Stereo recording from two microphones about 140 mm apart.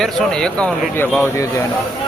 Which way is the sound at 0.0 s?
5° left (ahead or behind).